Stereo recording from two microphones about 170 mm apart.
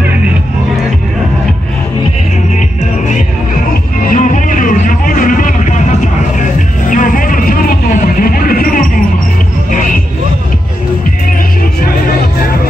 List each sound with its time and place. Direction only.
4.0 s music: 50° left (ahead or behind)